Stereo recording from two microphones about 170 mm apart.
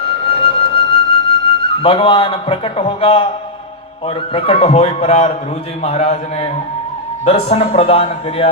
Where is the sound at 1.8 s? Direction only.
30° left (ahead or behind).